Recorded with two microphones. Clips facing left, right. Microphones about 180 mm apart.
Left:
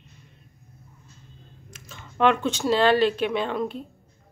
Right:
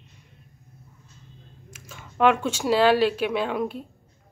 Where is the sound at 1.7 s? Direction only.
10° right (ahead or behind).